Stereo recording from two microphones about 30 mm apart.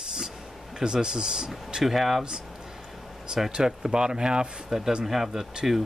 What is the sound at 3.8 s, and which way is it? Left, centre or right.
Speech, right.